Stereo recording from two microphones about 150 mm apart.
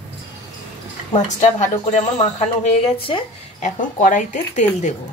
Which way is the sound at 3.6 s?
60° left (ahead or behind).